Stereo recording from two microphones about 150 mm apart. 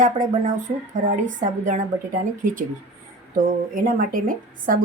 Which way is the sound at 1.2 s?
55° right (ahead or behind).